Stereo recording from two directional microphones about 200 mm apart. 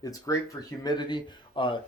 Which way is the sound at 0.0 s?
15° left (ahead or behind).